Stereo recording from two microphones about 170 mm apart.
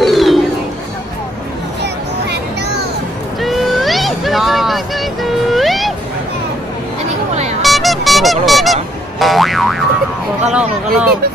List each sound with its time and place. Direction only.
0.0 s chatter: centre (ahead or behind)
3.3 s a sound: centre (ahead or behind)
7.6 s music: centre (ahead or behind)
9.2 s boing: centre (ahead or behind)
10.4 s speech: 5° right (ahead or behind)